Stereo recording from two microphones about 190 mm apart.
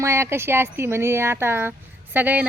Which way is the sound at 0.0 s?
15° right (ahead or behind).